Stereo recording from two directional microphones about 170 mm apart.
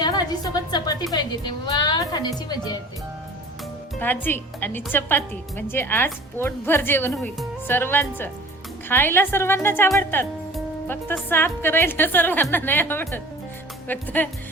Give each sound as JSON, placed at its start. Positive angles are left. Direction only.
{"t": 0.0, "sound": "a woman's voice", "side_deg": 25}
{"t": 4.0, "sound": "a woman's voice", "side_deg": 10}